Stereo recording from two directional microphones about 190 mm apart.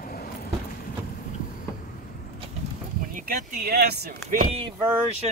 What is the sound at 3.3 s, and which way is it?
Speech, 55° right (ahead or behind).